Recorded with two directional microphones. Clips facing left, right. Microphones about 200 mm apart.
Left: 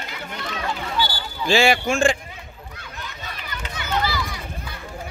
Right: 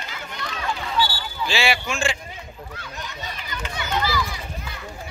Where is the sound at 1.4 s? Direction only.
45° left (ahead or behind).